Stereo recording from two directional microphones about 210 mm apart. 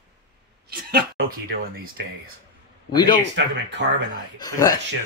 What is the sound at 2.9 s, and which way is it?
Speech, 20° left (ahead or behind).